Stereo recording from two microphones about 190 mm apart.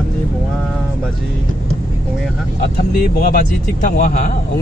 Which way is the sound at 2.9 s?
50° left (ahead or behind).